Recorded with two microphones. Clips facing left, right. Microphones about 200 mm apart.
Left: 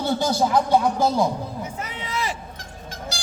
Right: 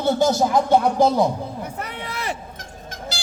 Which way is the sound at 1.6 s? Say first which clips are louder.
Right 2 dB; 60° right (ahead or behind).